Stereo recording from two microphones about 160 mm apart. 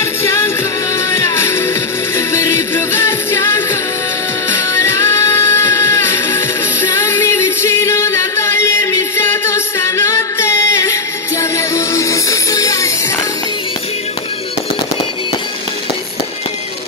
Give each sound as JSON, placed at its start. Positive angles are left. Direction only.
{"t": 0.0, "sound": "music", "side_deg": 15}
{"t": 2.7, "sound": "music", "side_deg": 15}
{"t": 4.9, "sound": "music", "side_deg": 15}
{"t": 7.1, "sound": "music", "side_deg": 15}
{"t": 11.5, "sound": "music", "side_deg": 20}